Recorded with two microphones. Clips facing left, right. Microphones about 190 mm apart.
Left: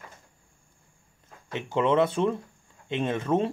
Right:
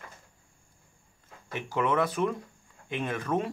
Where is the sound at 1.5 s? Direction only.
25° left (ahead or behind).